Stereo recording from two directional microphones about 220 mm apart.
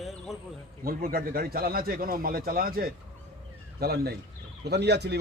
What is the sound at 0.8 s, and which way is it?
Speech, 40° right (ahead or behind).